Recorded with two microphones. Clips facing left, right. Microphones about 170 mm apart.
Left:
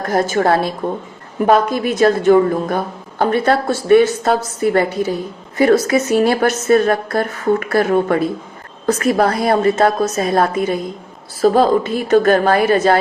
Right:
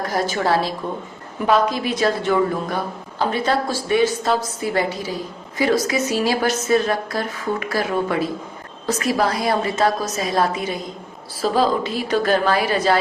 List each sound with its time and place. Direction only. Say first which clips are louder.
0.1 s a woman's voice: left 6 dB; 50° left (ahead or behind)